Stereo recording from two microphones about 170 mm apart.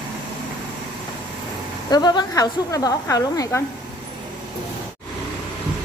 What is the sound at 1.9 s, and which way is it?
A woman's voice, 25° left (ahead or behind).